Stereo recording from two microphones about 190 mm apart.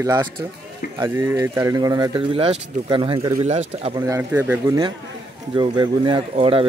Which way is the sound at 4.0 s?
15° right (ahead or behind).